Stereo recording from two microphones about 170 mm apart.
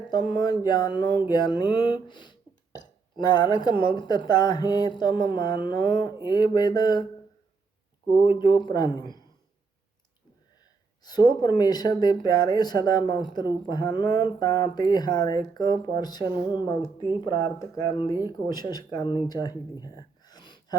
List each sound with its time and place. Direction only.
0.3 s speech: 25° left (ahead or behind)
8.1 s speech: 25° left (ahead or behind)
11.0 s speech: 25° left (ahead or behind)
16.2 s speech: 10° right (ahead or behind)
16.5 s speech: 25° left (ahead or behind)
17.7 s speech: 30° left (ahead or behind)
19.8 s gasp: 25° left (ahead or behind)